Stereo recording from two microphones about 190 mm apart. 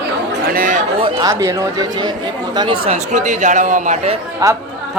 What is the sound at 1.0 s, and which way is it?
Speech, 20° right (ahead or behind).